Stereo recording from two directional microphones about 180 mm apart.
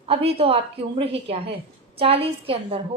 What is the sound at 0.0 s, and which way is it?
A woman's voice, 30° right (ahead or behind).